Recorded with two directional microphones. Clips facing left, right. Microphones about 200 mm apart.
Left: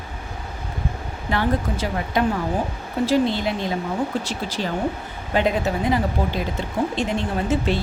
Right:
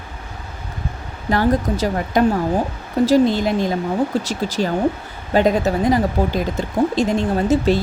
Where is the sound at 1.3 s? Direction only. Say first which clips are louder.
Right 5 dB; 40° right (ahead or behind).